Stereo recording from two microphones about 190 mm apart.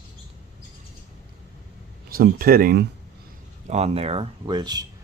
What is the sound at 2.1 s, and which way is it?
Speech, 50° right (ahead or behind).